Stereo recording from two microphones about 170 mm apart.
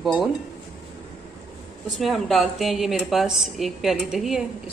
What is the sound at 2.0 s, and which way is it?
A woman's voice, centre (ahead or behind).